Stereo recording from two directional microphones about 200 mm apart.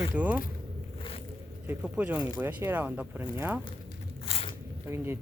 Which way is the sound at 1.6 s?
10° right (ahead or behind).